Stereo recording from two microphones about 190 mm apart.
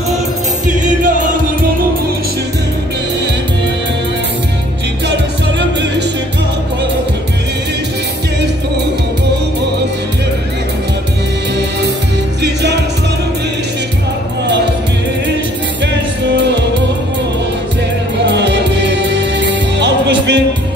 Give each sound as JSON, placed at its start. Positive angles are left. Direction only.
{"t": 0.7, "sound": "music", "side_deg": -40}
{"t": 5.0, "sound": "music", "side_deg": -65}
{"t": 16.3, "sound": "music", "side_deg": -65}
{"t": 18.2, "sound": "music", "side_deg": -65}